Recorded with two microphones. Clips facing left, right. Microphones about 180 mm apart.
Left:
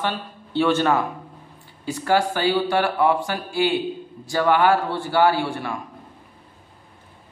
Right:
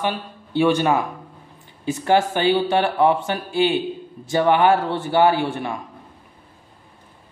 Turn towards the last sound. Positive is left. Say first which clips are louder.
# right 2 dB
turn(degrees=-20)  # may be behind; listen again after turning